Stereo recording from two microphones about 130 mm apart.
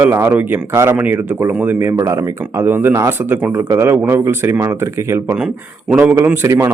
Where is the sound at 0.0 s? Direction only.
20° right (ahead or behind).